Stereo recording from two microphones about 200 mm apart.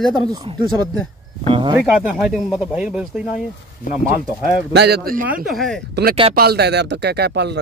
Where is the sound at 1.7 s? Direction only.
5° right (ahead or behind).